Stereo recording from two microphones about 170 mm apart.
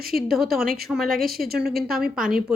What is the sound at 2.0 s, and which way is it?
Speech, 5° right (ahead or behind).